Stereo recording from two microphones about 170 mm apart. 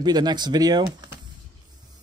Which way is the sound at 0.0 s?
25° right (ahead or behind).